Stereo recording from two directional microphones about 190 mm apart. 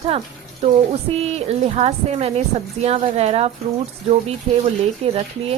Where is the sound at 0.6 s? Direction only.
30° right (ahead or behind).